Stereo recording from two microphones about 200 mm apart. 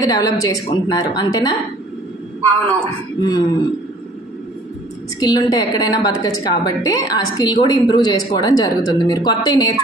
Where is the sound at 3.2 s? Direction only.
20° left (ahead or behind).